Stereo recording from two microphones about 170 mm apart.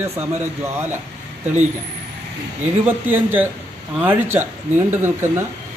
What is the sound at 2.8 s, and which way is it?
A man's voice, 10° right (ahead or behind).